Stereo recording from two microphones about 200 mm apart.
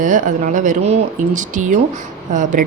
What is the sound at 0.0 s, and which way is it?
Speech, 40° right (ahead or behind).